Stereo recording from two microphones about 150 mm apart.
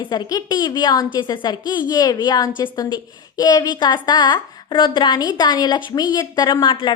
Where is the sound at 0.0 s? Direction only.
30° left (ahead or behind).